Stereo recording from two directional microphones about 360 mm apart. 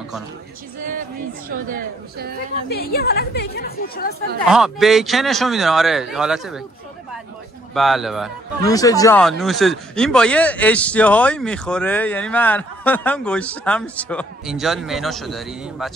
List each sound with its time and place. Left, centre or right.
1.5 s a woman's voice: right
3.0 s speech: left
4.5 s speech: centre
7.7 s speech: centre
8.6 s speech: centre